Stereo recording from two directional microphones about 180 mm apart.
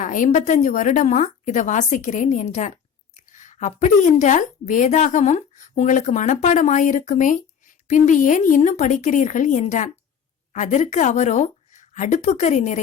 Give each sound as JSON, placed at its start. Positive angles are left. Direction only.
{"t": 0.0, "sound": "a woman's voice", "side_deg": 45}